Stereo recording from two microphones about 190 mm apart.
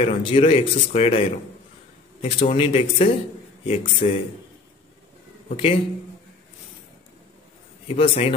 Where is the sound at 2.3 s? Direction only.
30° left (ahead or behind).